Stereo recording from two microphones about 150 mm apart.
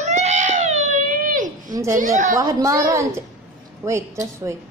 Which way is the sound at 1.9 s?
60° right (ahead or behind).